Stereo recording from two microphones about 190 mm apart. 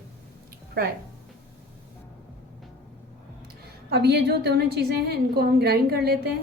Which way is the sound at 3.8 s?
55° right (ahead or behind).